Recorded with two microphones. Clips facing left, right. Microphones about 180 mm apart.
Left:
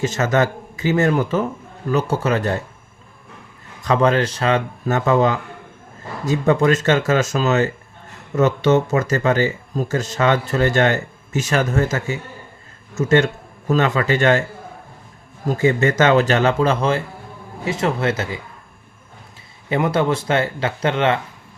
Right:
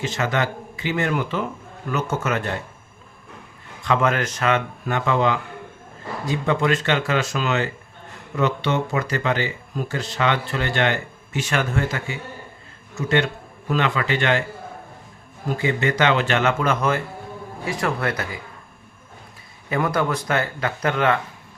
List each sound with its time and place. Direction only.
0.0 s speech: 45° left (ahead or behind)
3.8 s speech: 35° left (ahead or behind)
15.4 s speech: 45° left (ahead or behind); by 18.3 s 25° left (ahead or behind)
19.7 s speech: 25° left (ahead or behind)